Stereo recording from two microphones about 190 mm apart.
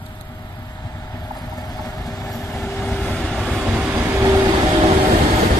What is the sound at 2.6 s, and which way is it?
Train, 10° left (ahead or behind).